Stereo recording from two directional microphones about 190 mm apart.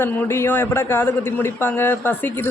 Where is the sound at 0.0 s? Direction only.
10° left (ahead or behind).